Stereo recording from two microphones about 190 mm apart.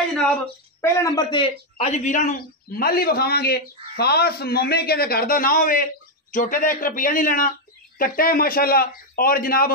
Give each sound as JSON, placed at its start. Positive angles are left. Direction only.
{"t": 0.7, "sound": "speech", "side_deg": 15}